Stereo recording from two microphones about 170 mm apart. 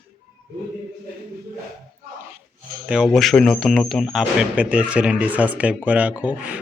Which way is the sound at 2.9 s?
Centre (ahead or behind).